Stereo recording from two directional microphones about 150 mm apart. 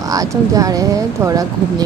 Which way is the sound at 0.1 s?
25° right (ahead or behind).